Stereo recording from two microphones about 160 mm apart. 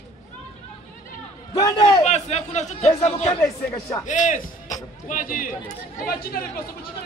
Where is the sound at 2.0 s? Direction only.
45° left (ahead or behind); by 6.4 s 65° left (ahead or behind).